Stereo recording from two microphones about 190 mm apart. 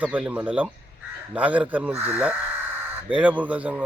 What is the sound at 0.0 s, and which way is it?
Speech, 5° right (ahead or behind).